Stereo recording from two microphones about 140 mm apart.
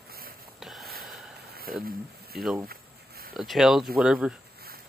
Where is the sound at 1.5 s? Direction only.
90° right.